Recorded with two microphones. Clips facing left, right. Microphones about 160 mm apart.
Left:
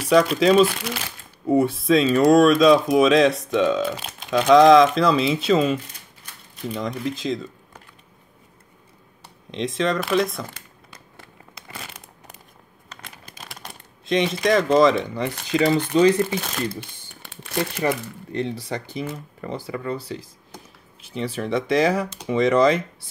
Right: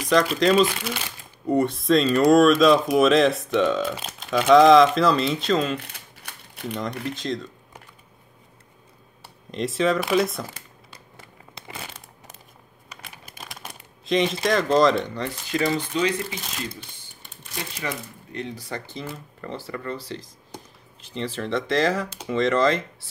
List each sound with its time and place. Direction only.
0.1 s speech: 5° left (ahead or behind)
5.8 s typewriter: 65° right (ahead or behind)
6.7 s speech: centre (ahead or behind)
9.5 s speech: centre (ahead or behind)
12.9 s a sound: 5° right (ahead or behind)
15.2 s speech: 70° left (ahead or behind)
17.2 s crumpling: 70° left (ahead or behind)
18.3 s speech: 30° left (ahead or behind); by 23.0 s 15° left (ahead or behind)